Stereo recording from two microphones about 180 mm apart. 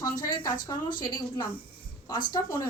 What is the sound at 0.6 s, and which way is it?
Speech, 25° left (ahead or behind).